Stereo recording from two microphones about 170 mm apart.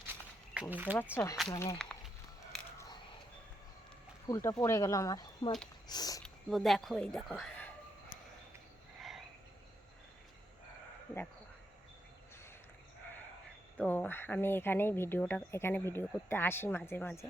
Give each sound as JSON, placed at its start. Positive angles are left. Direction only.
{"t": 0.0, "sound": "walk", "side_deg": -10}
{"t": 1.1, "sound": "speech", "side_deg": 15}
{"t": 1.8, "sound": "a sound", "side_deg": 5}
{"t": 4.3, "sound": "speech", "side_deg": 20}
{"t": 6.2, "sound": "speech", "side_deg": 0}
{"t": 9.0, "sound": "a sound", "side_deg": 0}
{"t": 13.7, "sound": "speech", "side_deg": 10}